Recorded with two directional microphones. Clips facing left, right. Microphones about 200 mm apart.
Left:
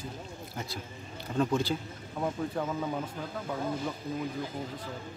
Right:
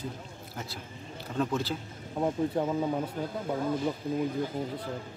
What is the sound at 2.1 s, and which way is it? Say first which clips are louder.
Speech: right 4 dB; 25° right (ahead or behind).